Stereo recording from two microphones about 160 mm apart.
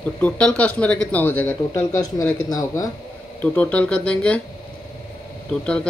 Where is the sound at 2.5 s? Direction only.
20° left (ahead or behind).